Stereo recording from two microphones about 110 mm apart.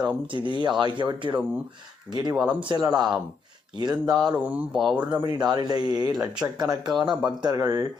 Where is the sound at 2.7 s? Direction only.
35° right (ahead or behind).